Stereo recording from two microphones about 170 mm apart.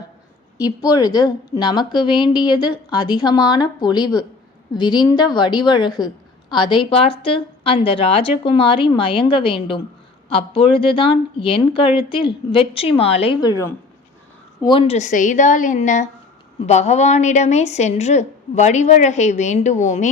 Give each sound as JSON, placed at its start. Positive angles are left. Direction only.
{"t": 0.6, "sound": "a woman's voice", "side_deg": 20}